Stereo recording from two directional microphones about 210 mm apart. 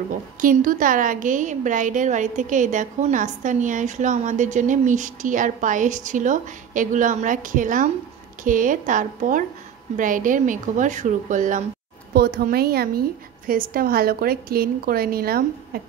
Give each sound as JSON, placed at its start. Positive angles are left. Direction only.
{"t": 0.4, "sound": "a woman's voice", "side_deg": -40}